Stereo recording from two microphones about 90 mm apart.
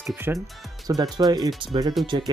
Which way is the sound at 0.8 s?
45° right (ahead or behind).